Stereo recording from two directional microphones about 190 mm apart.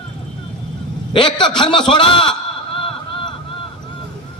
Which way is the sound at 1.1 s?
25° left (ahead or behind).